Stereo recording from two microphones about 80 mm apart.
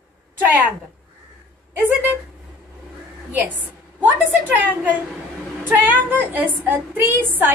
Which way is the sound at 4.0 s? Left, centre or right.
Right.